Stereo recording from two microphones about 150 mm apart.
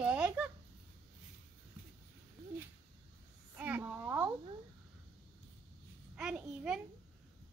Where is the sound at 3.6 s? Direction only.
10° right (ahead or behind).